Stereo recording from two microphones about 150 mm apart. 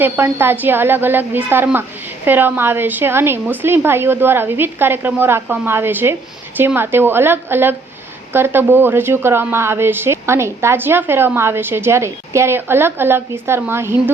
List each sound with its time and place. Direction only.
0.0 s speech: 15° right (ahead or behind)